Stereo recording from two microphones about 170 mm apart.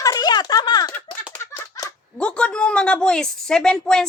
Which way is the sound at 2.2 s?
5° left (ahead or behind).